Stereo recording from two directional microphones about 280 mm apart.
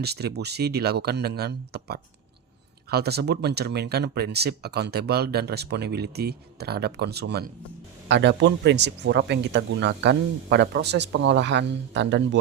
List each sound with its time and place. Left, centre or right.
0.0 s speech: right